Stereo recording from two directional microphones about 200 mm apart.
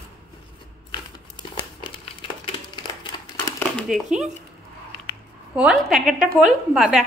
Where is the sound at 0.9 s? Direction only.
25° left (ahead or behind).